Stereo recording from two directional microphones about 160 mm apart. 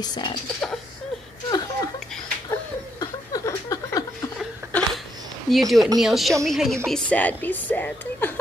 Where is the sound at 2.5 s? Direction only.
20° left (ahead or behind).